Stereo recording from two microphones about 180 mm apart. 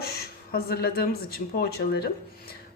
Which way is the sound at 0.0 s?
60° left (ahead or behind).